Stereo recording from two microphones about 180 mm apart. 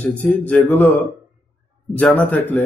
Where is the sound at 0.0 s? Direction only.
10° left (ahead or behind).